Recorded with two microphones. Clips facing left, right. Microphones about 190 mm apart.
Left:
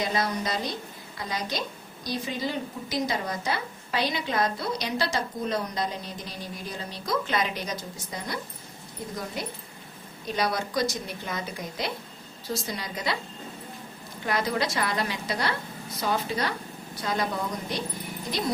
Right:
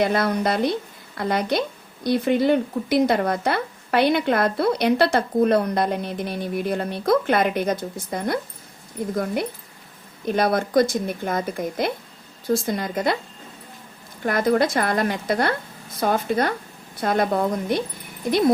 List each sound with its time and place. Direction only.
0.0 s a woman's voice: 60° right (ahead or behind)
14.3 s a woman's voice: 50° right (ahead or behind)